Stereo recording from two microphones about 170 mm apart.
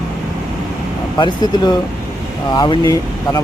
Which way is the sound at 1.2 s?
25° left (ahead or behind).